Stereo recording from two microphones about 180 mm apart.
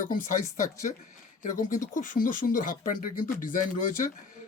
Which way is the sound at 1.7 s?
45° left (ahead or behind).